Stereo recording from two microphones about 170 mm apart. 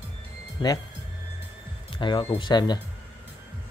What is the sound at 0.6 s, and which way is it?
Speech, 30° left (ahead or behind).